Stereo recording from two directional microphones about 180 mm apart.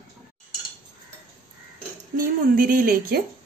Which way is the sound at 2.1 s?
50° right (ahead or behind).